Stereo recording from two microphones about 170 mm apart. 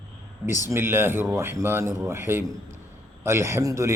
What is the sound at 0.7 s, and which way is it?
A man's voice, 15° right (ahead or behind).